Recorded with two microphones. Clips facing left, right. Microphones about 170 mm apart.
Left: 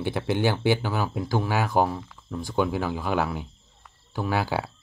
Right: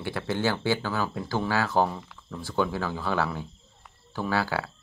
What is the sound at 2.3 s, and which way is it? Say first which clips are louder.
Speech: left 2 dB; 15° left (ahead or behind).